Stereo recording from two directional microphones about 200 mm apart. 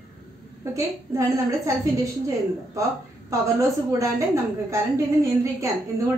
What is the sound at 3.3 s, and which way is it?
Speech, 15° right (ahead or behind).